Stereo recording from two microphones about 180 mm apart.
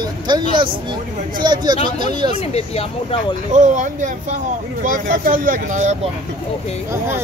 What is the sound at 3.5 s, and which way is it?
Speech, 40° right (ahead or behind).